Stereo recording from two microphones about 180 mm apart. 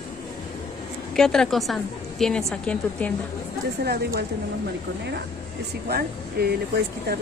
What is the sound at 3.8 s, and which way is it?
Speech, 65° right (ahead or behind).